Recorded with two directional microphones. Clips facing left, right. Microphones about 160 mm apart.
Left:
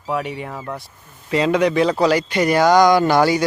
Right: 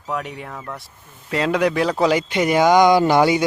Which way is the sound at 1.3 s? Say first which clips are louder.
Left 2 dB; centre (ahead or behind).